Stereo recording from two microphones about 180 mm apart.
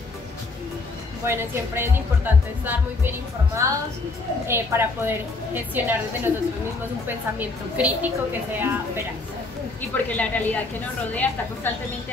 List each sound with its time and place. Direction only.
1.2 s speech: 15° right (ahead or behind)
9.8 s speech: 10° left (ahead or behind)